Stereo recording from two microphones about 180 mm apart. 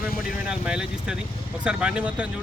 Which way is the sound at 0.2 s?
5° right (ahead or behind).